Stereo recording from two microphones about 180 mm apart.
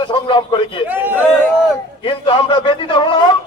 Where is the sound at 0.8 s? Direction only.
10° right (ahead or behind).